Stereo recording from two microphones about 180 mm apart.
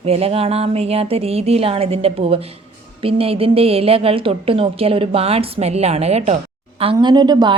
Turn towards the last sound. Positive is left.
turn(degrees=-25)  # may be behind; listen again after turning